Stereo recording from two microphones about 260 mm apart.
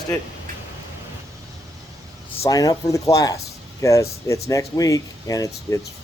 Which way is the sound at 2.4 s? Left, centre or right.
Centre.